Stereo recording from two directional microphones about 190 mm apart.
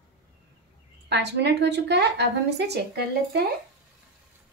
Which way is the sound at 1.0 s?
60° right (ahead or behind).